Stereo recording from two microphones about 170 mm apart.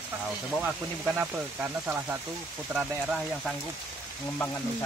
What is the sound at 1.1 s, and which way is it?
Speech, 10° right (ahead or behind).